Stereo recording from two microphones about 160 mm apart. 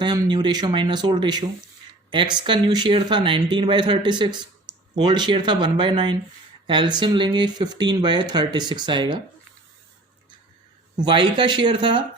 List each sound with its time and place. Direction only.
0.0 s speech: 30° right (ahead or behind)
10.9 s speech: 30° right (ahead or behind)